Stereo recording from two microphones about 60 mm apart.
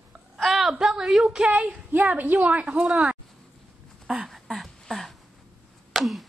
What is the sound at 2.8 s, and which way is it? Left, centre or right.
Speech, centre.